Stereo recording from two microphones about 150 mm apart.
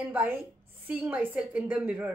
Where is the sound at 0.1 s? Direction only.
15° right (ahead or behind).